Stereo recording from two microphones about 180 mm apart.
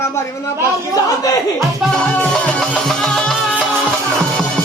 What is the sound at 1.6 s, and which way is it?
Music, centre (ahead or behind).